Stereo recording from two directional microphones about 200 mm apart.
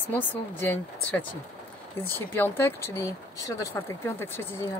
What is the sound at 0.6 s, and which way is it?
Speech, 10° left (ahead or behind).